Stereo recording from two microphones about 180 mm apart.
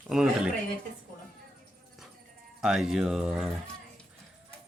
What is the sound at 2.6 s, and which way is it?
Speech, 5° right (ahead or behind).